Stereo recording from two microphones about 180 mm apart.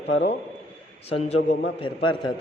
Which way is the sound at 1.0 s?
35° left (ahead or behind).